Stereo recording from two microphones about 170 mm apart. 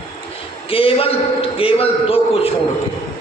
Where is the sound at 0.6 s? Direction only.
35° left (ahead or behind).